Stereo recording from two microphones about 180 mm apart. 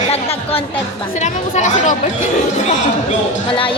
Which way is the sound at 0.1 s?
35° left (ahead or behind).